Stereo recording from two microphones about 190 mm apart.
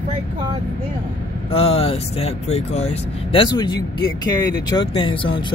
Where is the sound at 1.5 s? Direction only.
30° left (ahead or behind).